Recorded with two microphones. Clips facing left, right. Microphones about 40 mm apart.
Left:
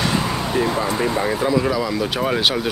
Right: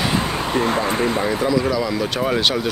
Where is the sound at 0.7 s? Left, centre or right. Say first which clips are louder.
Right 1 dB; right.